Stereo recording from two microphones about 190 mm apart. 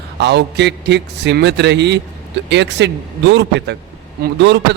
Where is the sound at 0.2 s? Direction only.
60° right (ahead or behind).